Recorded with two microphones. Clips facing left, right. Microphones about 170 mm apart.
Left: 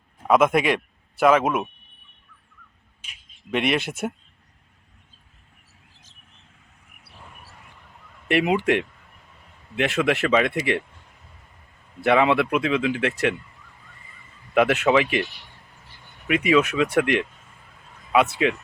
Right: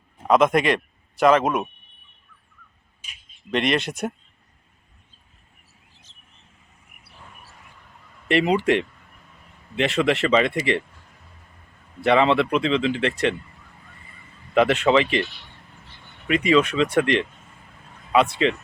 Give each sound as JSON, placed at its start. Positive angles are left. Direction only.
{"t": 0.3, "sound": "speech", "side_deg": 5}
{"t": 3.0, "sound": "speech", "side_deg": 60}
{"t": 3.5, "sound": "speech", "side_deg": 5}
{"t": 8.3, "sound": "speech", "side_deg": 5}
{"t": 12.0, "sound": "speech", "side_deg": 5}
{"t": 14.5, "sound": "speech", "side_deg": 5}